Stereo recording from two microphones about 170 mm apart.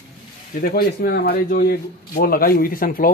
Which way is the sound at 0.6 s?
60° left (ahead or behind).